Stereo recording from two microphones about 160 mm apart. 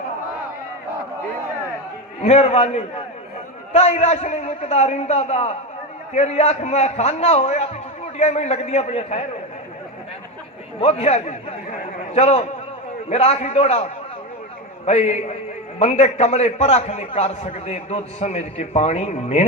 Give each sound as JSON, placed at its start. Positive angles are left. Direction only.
{"t": 2.2, "sound": "a man's voice", "side_deg": 40}
{"t": 10.8, "sound": "a man's voice", "side_deg": 40}